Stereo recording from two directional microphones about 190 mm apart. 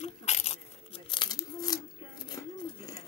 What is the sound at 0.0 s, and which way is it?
Tearing, 35° left (ahead or behind).